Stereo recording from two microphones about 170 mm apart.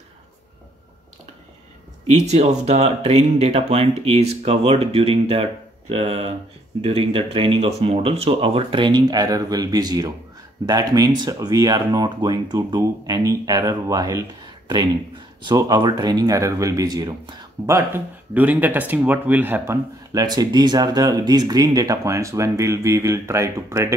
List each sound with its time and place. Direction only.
2.0 s speech: 40° right (ahead or behind); by 14.2 s 20° right (ahead or behind)
15.4 s speech: 25° right (ahead or behind)